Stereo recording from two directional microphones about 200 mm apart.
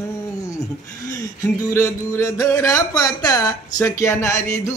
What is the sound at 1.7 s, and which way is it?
Speech, 15° left (ahead or behind).